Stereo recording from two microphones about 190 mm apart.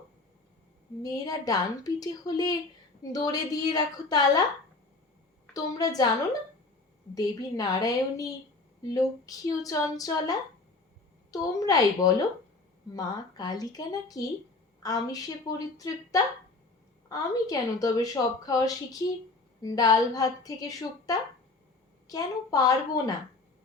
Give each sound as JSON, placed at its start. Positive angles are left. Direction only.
{"t": 1.0, "sound": "a woman's voice", "side_deg": 20}
{"t": 5.5, "sound": "a woman's voice", "side_deg": 20}
{"t": 7.1, "sound": "a woman's voice", "side_deg": 20}